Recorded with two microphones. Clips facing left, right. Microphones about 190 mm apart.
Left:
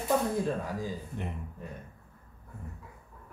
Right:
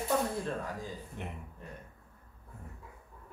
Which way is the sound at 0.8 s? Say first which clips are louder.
Left 5 dB; centre (ahead or behind).